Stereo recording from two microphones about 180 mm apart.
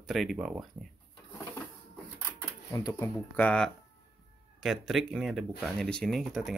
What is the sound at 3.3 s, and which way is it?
Speech, 5° left (ahead or behind).